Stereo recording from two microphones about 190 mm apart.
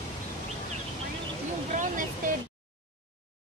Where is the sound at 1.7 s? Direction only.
45° right (ahead or behind).